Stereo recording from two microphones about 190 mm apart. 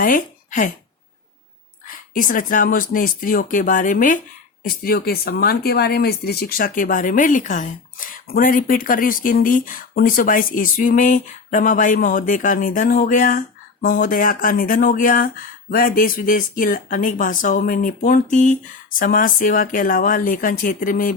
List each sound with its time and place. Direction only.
0.0 s a woman's voice: 45° left (ahead or behind)
1.9 s speech: 45° left (ahead or behind)